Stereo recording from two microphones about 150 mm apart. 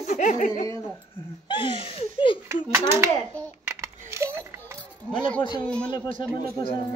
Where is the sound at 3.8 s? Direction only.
20° right (ahead or behind).